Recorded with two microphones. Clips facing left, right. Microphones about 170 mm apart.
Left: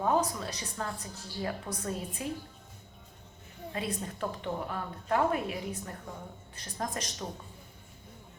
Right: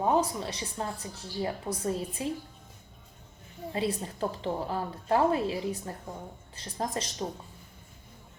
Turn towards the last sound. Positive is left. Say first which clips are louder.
# right 4 dB
turn(degrees=-25)  # may be behind; listen again after turning